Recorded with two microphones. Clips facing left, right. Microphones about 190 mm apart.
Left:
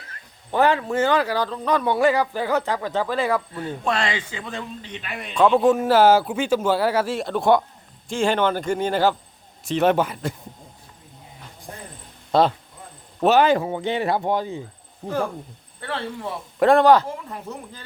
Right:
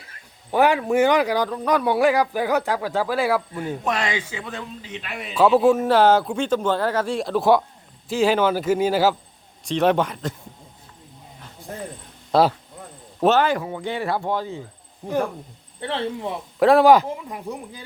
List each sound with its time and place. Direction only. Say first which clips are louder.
0.5 s a man's voice: right 2 dB; 10° right (ahead or behind); by 10.3 s 5° left (ahead or behind)
12.3 s speech: right 1 dB; 5° right (ahead or behind)
13.2 s speech: left 2 dB; 15° left (ahead or behind)
15.8 s speech: right 3 dB; 20° right (ahead or behind)
16.6 s a man's voice: right 1 dB; 5° right (ahead or behind)